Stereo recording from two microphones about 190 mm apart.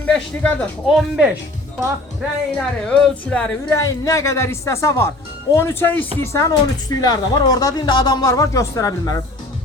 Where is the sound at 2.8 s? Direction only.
5° left (ahead or behind).